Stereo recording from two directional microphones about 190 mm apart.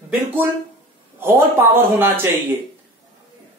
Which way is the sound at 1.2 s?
10° right (ahead or behind).